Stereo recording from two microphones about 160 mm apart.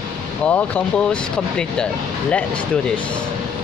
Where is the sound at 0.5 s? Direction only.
10° left (ahead or behind).